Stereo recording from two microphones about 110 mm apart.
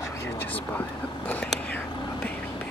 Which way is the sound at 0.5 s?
15° left (ahead or behind).